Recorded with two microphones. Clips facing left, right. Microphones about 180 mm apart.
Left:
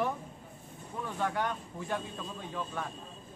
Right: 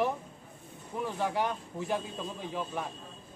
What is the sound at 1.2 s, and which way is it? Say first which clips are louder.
Speech: even; 10° right (ahead or behind).